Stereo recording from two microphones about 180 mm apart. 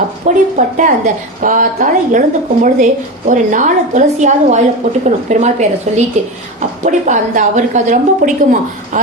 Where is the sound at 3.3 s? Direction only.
45° right (ahead or behind).